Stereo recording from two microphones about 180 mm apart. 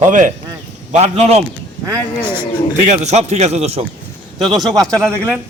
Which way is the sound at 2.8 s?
40° right (ahead or behind).